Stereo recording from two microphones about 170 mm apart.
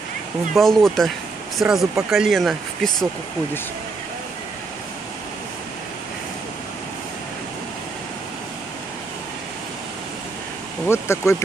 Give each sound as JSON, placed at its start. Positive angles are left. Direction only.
{"t": 0.6, "sound": "speech", "side_deg": 0}
{"t": 10.9, "sound": "speech", "side_deg": 15}